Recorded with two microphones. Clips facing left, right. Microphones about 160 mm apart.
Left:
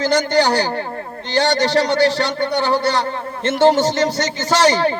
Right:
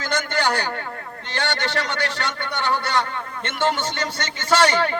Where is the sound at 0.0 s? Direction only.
35° left (ahead or behind).